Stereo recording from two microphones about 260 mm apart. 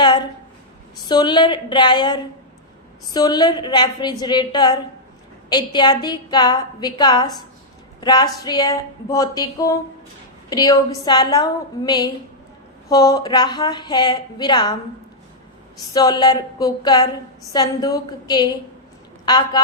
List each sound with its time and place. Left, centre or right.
0.0 s a sound: centre
1.0 s a woman's voice: centre
15.9 s a woman's voice: centre